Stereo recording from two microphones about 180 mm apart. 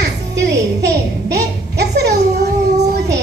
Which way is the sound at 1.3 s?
65° right (ahead or behind).